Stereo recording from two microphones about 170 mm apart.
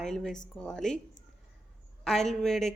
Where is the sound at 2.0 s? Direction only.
5° left (ahead or behind).